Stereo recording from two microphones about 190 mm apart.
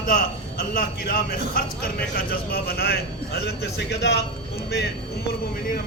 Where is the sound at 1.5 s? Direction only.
55° left (ahead or behind).